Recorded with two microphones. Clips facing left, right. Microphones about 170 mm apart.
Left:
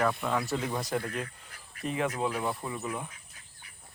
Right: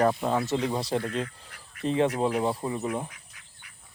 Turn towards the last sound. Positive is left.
turn(degrees=-30)  # may be behind; listen again after turning